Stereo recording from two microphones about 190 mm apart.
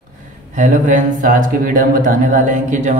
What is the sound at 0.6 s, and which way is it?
A man's voice, 40° right (ahead or behind).